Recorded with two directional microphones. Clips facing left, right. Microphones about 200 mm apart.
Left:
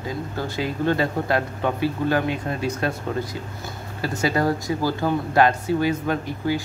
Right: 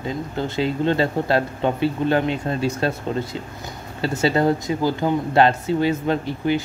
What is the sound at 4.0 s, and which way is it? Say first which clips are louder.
Speech: right 3 dB; 25° right (ahead or behind).